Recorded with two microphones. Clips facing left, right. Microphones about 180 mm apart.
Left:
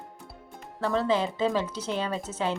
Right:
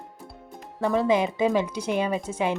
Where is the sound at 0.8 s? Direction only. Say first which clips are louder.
Right 4 dB; 15° right (ahead or behind).